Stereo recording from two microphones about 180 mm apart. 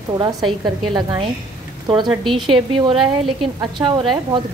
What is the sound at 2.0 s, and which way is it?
Speech, centre (ahead or behind).